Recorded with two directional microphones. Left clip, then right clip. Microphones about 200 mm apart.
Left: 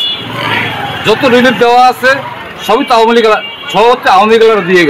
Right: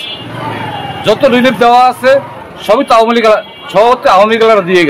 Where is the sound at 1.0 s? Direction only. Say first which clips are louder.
Left 1 dB; 25° right (ahead or behind).